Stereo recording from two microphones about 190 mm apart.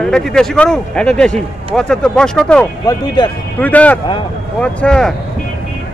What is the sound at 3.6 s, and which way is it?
Speech, 10° left (ahead or behind).